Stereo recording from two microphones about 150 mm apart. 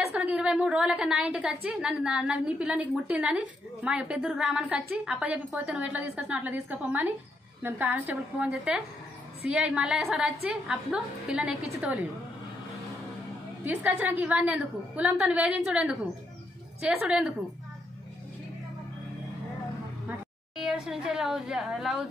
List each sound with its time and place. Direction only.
0.1 s a woman's voice: 10° right (ahead or behind)
13.7 s a woman's voice: 10° right (ahead or behind)
20.1 s a woman's voice: 5° right (ahead or behind)